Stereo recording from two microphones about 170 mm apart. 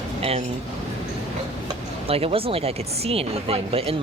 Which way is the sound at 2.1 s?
35° right (ahead or behind).